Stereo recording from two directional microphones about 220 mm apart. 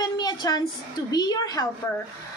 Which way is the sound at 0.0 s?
20° left (ahead or behind).